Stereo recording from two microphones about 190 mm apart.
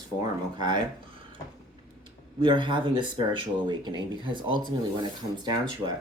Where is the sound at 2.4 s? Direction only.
25° right (ahead or behind).